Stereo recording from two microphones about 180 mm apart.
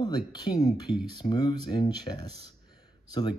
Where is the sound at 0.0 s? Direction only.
25° left (ahead or behind).